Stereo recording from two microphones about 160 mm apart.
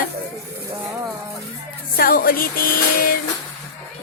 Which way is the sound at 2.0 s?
65° left (ahead or behind).